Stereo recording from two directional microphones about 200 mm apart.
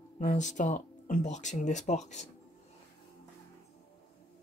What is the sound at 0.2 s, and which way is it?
Speech, 40° left (ahead or behind).